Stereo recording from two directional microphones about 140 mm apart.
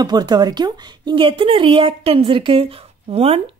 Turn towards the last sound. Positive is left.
turn(degrees=-45)  # may be behind; listen again after turning